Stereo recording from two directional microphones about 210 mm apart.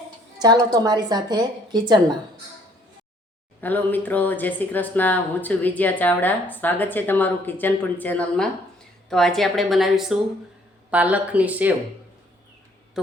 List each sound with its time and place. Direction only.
0.3 s a woman's voice: 20° right (ahead or behind)
3.6 s a woman's voice: 10° left (ahead or behind); by 11.8 s 5° right (ahead or behind)